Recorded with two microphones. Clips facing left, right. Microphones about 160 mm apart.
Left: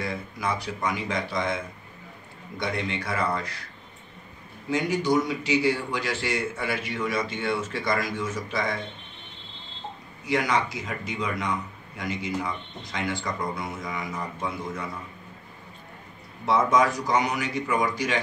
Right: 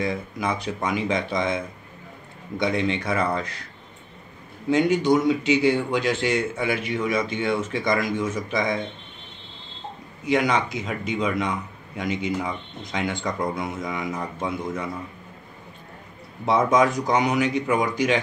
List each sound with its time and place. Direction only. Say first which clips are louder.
0.0 s a man's voice: right 4 dB; 20° right (ahead or behind)
2.6 s a man's voice: right 6 dB; 20° right (ahead or behind)
4.6 s a man's voice: right 5 dB; 20° right (ahead or behind)
10.2 s a man's voice: right 3 dB; 20° right (ahead or behind)
16.4 s a man's voice: right 2 dB; 20° right (ahead or behind)